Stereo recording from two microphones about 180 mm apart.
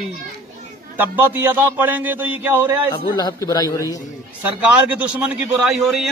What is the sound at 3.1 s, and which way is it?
Speech, 20° left (ahead or behind).